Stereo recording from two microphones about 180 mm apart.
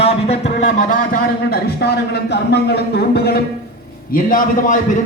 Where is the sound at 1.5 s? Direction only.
60° left (ahead or behind).